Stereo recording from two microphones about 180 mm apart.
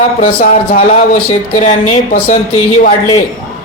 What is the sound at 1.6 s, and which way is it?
Speech, 40° left (ahead or behind).